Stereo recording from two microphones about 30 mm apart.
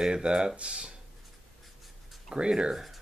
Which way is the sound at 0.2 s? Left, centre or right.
Right.